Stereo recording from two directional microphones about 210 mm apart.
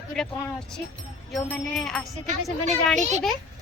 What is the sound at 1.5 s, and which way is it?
Speech, centre (ahead or behind).